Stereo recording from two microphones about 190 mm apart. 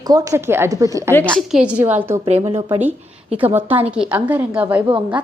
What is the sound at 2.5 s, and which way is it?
Speech, 25° right (ahead or behind).